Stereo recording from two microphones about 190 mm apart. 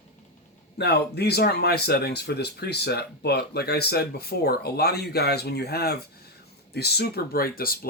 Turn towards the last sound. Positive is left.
turn(degrees=50)  # may be behind; listen again after turning